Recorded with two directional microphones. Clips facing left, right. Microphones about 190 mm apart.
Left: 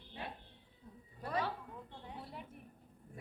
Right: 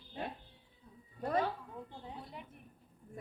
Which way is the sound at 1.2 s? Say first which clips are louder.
Right 5 dB; 45° right (ahead or behind).